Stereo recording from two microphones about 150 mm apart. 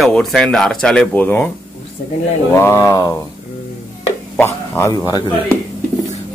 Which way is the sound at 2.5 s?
15° left (ahead or behind).